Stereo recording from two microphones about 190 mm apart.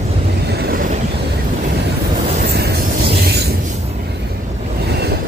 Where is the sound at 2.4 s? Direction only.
60° right (ahead or behind).